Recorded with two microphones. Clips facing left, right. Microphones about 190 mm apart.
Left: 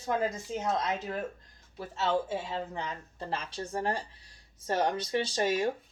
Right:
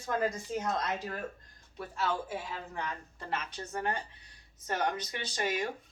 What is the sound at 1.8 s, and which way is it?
Speech, 25° left (ahead or behind).